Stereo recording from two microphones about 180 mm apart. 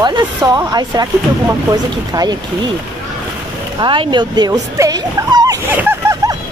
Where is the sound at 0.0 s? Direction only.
20° right (ahead or behind).